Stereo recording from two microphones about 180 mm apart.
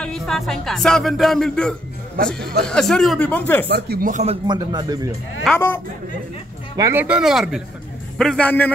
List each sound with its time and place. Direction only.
0.0 s music: centre (ahead or behind)
3.7 s speech: 60° right (ahead or behind)
4.1 s speech: 35° right (ahead or behind)
4.5 s speech: 20° right (ahead or behind)
5.5 s music: centre (ahead or behind)
6.8 s music: 10° right (ahead or behind)
8.2 s a man's voice: 5° left (ahead or behind)